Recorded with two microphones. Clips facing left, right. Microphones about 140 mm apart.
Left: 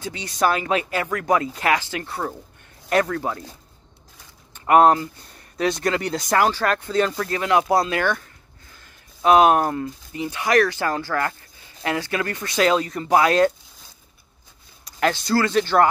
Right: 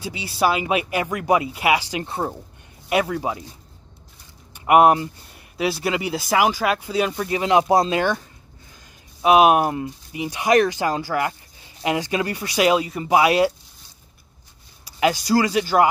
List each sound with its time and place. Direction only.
0.0 s speech: 10° right (ahead or behind)
2.9 s speech: 10° right (ahead or behind)
4.6 s speech: 15° right (ahead or behind)
9.2 s speech: 15° right (ahead or behind)
14.9 s speech: 10° right (ahead or behind)